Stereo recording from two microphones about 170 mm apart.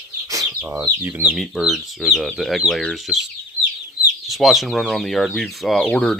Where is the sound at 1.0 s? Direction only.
10° right (ahead or behind).